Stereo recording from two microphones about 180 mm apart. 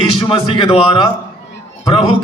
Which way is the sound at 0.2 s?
30° left (ahead or behind).